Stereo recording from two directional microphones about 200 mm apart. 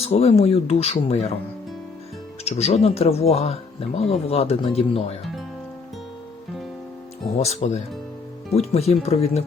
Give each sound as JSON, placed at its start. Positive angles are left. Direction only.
{"t": 0.0, "sound": "speech", "side_deg": 30}
{"t": 2.4, "sound": "speech", "side_deg": 30}
{"t": 7.3, "sound": "speech", "side_deg": 35}